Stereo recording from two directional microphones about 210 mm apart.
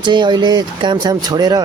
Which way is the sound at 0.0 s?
20° right (ahead or behind).